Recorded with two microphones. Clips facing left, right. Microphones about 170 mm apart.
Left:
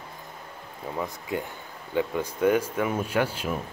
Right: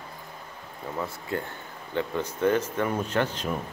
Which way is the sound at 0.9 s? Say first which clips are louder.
Left 1 dB; 15° left (ahead or behind).